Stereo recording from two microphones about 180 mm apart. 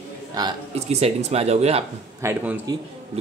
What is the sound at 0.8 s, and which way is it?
Speech, 35° right (ahead or behind).